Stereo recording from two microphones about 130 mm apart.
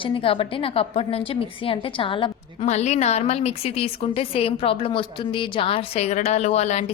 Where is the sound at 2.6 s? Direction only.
60° left (ahead or behind).